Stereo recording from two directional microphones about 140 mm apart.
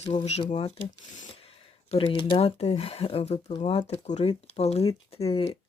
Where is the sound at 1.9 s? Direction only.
40° left (ahead or behind).